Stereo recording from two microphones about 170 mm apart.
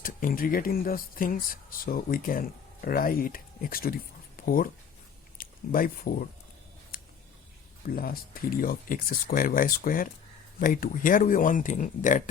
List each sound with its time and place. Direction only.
0.0 s speech: 55° left (ahead or behind)
6.9 s a sound: 60° left (ahead or behind)
7.9 s speech: 60° left (ahead or behind)